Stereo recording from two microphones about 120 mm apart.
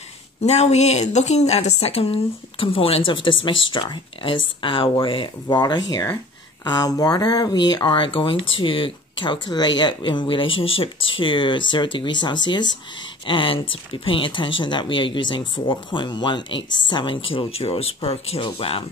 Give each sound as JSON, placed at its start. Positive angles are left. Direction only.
{"t": 0.4, "sound": "a woman's voice", "side_deg": 65}